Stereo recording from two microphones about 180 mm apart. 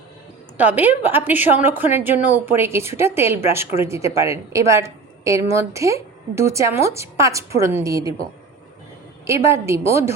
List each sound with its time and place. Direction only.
0.5 s a woman's voice: 10° right (ahead or behind)
9.2 s a woman's voice: 15° right (ahead or behind)